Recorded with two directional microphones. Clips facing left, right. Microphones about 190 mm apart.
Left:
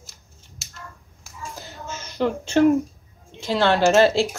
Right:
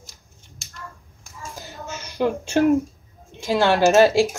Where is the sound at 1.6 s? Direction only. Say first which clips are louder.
Right 3 dB; 15° right (ahead or behind).